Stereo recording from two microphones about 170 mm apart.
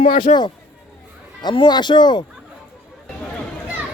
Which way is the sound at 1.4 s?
25° left (ahead or behind).